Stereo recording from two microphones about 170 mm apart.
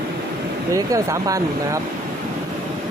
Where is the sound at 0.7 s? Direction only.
20° right (ahead or behind).